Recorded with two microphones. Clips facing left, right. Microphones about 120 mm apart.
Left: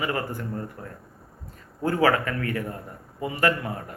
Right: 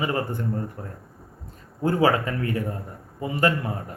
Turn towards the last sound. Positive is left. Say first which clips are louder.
# right 1 dB
turn(degrees=-25)  # may be behind; listen again after turning